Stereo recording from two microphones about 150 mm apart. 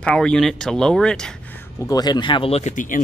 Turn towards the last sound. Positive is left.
turn(degrees=60)  # may be behind; listen again after turning